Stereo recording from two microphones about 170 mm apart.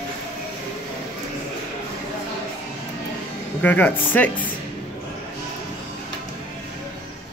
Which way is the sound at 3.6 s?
10° left (ahead or behind).